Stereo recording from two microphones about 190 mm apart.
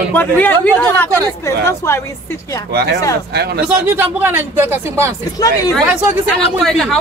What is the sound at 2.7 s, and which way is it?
Speech, 55° right (ahead or behind).